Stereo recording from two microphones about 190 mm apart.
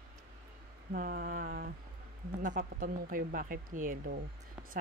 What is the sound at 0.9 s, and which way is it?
Speech, 50° right (ahead or behind).